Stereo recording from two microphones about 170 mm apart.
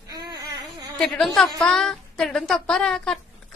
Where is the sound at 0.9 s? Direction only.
5° left (ahead or behind).